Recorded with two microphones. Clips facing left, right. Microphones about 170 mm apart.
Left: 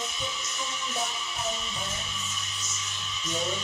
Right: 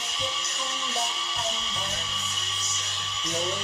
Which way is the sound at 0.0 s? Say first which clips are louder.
Right 1 dB; 70° right (ahead or behind).